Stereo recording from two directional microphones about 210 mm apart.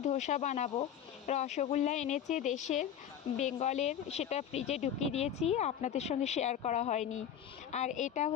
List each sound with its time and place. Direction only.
0.0 s speech: 35° left (ahead or behind)